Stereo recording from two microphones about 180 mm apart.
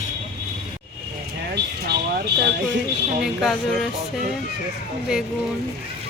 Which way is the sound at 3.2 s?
Centre (ahead or behind).